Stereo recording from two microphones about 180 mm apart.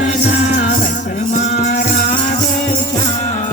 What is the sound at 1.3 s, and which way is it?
Music, 40° left (ahead or behind).